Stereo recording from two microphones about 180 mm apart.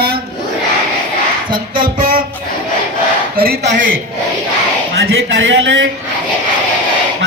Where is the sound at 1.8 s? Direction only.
50° right (ahead or behind).